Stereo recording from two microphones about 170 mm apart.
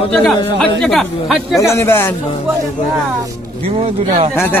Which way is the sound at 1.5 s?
15° left (ahead or behind).